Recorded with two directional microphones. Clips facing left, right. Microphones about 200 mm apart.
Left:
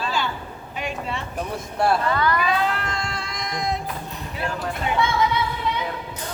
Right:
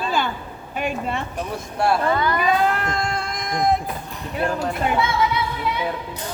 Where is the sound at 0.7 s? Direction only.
50° right (ahead or behind).